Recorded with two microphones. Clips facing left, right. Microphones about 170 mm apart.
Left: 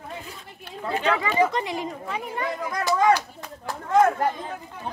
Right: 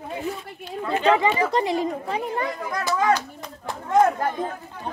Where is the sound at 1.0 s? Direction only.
30° right (ahead or behind).